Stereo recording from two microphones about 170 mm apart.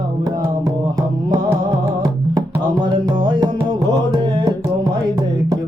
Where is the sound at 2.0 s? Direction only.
25° right (ahead or behind).